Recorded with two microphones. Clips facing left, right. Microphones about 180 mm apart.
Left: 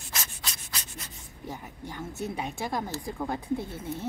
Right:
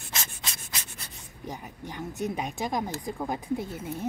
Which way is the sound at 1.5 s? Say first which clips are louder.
Right 1 dB; 15° right (ahead or behind).